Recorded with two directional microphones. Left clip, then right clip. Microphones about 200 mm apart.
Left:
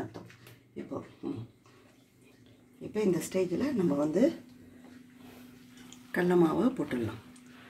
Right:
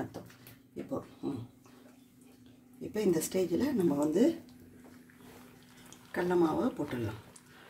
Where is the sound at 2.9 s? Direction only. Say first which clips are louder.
Left 1 dB; 20° right (ahead or behind).